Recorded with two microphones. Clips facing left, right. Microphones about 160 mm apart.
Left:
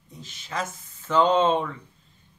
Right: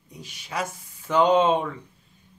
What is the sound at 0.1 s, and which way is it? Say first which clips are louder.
Speech: right 1 dB; 10° right (ahead or behind).